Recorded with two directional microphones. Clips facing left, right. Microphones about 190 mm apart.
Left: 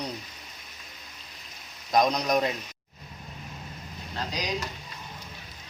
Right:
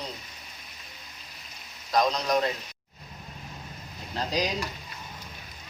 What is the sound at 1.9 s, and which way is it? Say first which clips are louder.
Speech: left 1 dB; 15° left (ahead or behind).